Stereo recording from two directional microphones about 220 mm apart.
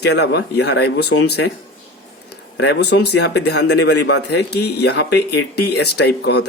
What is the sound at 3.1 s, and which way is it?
Speech, 50° left (ahead or behind).